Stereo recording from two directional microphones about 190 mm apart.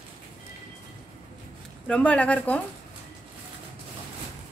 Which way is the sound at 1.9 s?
5° left (ahead or behind).